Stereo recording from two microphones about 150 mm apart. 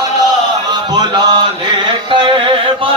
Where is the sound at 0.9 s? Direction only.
30° right (ahead or behind).